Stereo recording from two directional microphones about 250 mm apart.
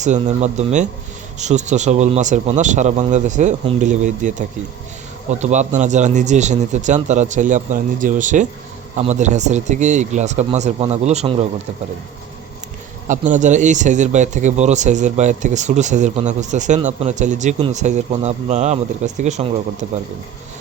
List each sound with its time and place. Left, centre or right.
0.0 s speech: right
13.1 s speech: right